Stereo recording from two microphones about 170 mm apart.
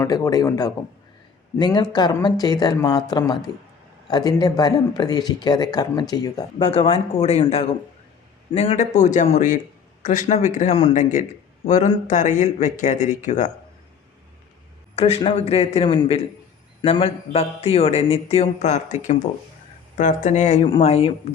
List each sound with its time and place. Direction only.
0.0 s speech: 20° left (ahead or behind)
6.6 s a man's voice: 35° left (ahead or behind)
14.9 s a man's voice: 35° left (ahead or behind)